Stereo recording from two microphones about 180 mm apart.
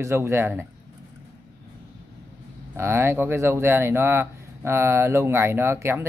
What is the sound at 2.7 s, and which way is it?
Speech, 15° right (ahead or behind).